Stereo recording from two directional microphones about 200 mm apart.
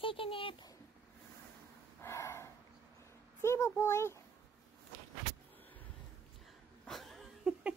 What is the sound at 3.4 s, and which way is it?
Speech, 15° left (ahead or behind).